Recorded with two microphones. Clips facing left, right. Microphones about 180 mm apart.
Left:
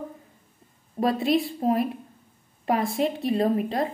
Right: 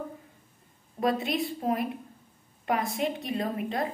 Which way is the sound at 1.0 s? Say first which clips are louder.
Left 3 dB; 50° left (ahead or behind).